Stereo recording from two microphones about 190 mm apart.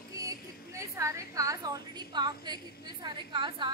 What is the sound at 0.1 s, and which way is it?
A woman's voice, 15° right (ahead or behind).